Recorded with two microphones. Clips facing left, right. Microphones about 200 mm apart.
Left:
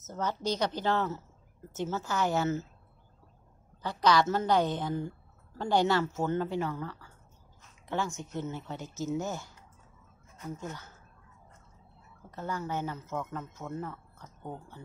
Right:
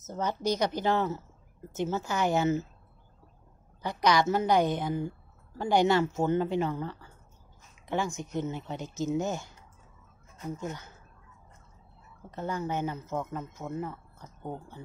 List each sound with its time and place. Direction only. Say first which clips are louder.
0.0 s a woman's voice: right 2 dB; 15° right (ahead or behind)
3.8 s a woman's voice: even; 15° right (ahead or behind)
12.3 s a woman's voice: right 3 dB; 20° right (ahead or behind)